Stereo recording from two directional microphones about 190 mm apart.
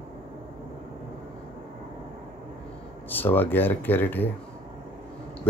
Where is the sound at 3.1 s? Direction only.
10° left (ahead or behind).